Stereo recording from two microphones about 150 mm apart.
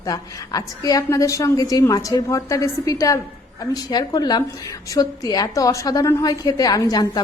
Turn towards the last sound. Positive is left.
turn(degrees=25)  # may be behind; listen again after turning